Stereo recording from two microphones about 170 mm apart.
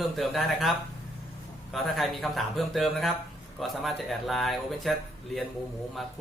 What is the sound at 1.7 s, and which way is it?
Speech, centre (ahead or behind).